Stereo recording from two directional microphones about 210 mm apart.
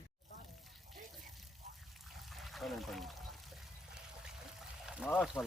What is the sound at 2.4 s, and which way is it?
Pour, centre (ahead or behind).